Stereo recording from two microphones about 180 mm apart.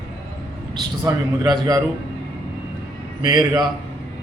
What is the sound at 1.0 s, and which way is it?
Speech, 20° right (ahead or behind).